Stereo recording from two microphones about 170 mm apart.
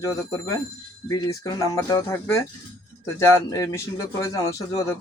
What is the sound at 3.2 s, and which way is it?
Speech, 15° left (ahead or behind).